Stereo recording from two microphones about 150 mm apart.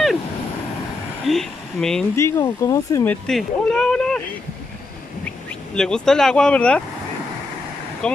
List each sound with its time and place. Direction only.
1.2 s speech: centre (ahead or behind)
2.1 s speech: 20° left (ahead or behind)
3.1 s speech: 5° left (ahead or behind)
5.8 s speech: 5° left (ahead or behind)
8.0 s speech: 5° left (ahead or behind)